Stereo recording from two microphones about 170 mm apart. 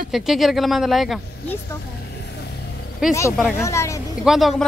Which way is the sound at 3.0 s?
5° right (ahead or behind).